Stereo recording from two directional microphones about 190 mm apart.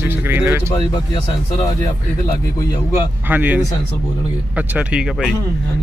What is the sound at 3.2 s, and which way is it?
Speech, 10° right (ahead or behind).